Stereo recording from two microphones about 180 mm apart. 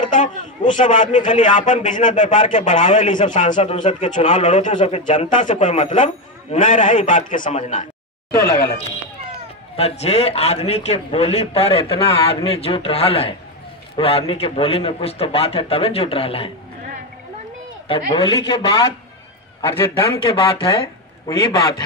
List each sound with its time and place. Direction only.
0.1 s a man's voice: 45° left (ahead or behind)
9.8 s a man's voice: 35° left (ahead or behind)
17.8 s a man's voice: 25° left (ahead or behind)
21.3 s speech: 20° left (ahead or behind)